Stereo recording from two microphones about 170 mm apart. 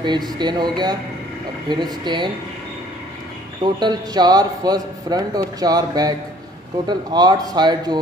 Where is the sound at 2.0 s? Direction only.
25° right (ahead or behind).